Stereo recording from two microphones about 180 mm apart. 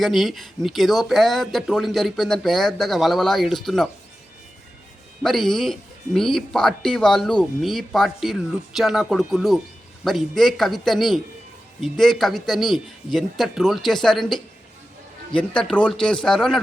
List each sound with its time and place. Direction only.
0.0 s speech: centre (ahead or behind)
5.2 s speech: centre (ahead or behind)